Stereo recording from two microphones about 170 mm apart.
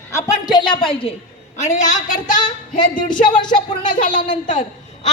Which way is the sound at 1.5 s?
45° left (ahead or behind).